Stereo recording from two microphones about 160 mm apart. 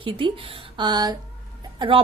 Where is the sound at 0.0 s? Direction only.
35° right (ahead or behind).